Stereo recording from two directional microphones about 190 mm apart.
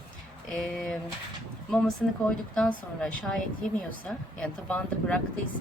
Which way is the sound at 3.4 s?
40° left (ahead or behind).